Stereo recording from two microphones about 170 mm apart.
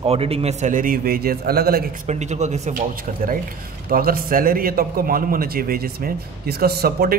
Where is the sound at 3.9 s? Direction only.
60° right (ahead or behind).